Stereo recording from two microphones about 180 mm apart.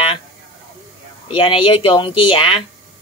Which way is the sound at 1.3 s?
25° left (ahead or behind).